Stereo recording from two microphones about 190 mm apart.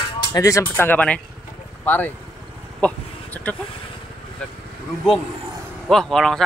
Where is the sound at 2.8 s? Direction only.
10° left (ahead or behind).